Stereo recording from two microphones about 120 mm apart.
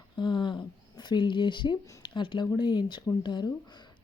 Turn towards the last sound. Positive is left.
turn(degrees=35)  # may be behind; listen again after turning